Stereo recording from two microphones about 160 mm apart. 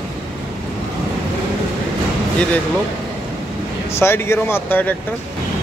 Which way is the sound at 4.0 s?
15° left (ahead or behind).